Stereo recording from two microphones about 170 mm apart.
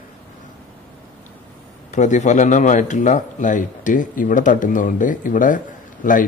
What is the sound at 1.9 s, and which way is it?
A man's voice, 45° left (ahead or behind).